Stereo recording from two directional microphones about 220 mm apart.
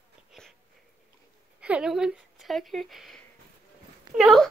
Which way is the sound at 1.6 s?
5° right (ahead or behind).